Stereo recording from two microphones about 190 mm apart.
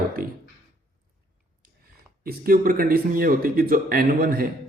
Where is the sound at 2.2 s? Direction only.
50° right (ahead or behind).